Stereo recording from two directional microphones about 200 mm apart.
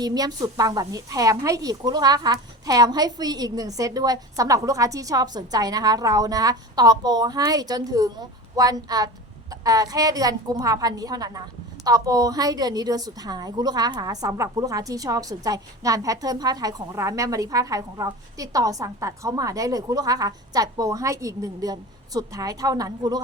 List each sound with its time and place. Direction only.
0.0 s a woman's voice: 20° right (ahead or behind)